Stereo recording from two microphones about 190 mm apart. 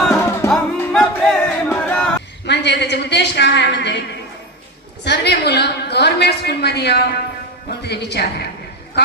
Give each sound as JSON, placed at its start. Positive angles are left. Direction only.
{"t": 0.0, "sound": "music", "side_deg": 5}
{"t": 2.5, "sound": "a sound", "side_deg": 65}
{"t": 5.0, "sound": "a woman's voice", "side_deg": 65}